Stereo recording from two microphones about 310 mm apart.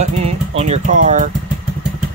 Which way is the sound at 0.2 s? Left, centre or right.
Right.